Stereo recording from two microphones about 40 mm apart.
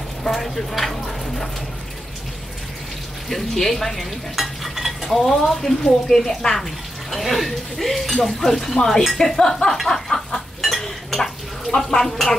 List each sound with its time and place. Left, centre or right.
0.3 s speech: centre
3.3 s stir: centre
9.1 s speech: centre
9.8 s a sound: centre
10.6 s stir: centre
11.7 s speech: centre